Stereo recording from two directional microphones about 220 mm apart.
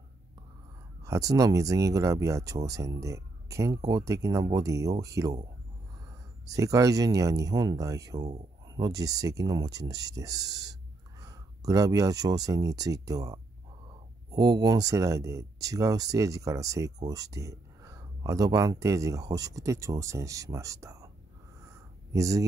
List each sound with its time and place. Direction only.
1.0 s speech: 15° right (ahead or behind)
6.4 s speech: 15° right (ahead or behind)
21.6 s a sound: 15° right (ahead or behind)